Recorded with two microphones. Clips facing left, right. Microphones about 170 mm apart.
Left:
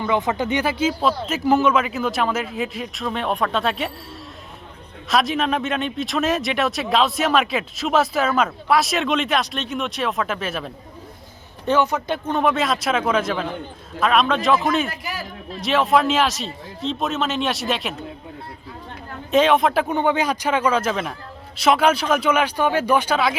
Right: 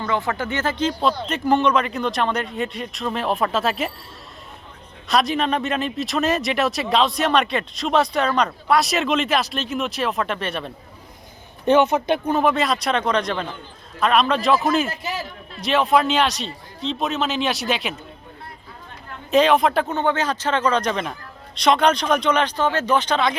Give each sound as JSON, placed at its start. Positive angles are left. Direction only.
{"t": 0.0, "sound": "speech", "side_deg": 15}
{"t": 5.0, "sound": "speech", "side_deg": 0}
{"t": 11.6, "sound": "speech", "side_deg": -20}
{"t": 12.3, "sound": "speech", "side_deg": 0}
{"t": 14.8, "sound": "speech", "side_deg": -25}
{"t": 15.6, "sound": "speech", "side_deg": 0}
{"t": 19.3, "sound": "speech", "side_deg": 0}
{"t": 19.9, "sound": "a man's voice", "side_deg": 15}